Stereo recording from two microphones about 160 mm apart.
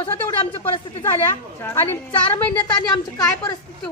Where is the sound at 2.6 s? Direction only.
25° left (ahead or behind).